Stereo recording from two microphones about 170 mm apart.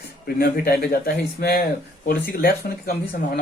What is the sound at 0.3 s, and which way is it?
Speech, 60° left (ahead or behind).